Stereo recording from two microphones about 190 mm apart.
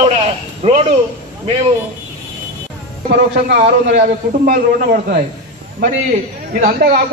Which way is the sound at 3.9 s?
50° right (ahead or behind).